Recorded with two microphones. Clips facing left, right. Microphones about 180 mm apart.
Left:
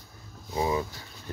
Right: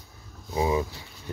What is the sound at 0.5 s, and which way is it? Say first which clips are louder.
Speech: right 2 dB; 15° right (ahead or behind).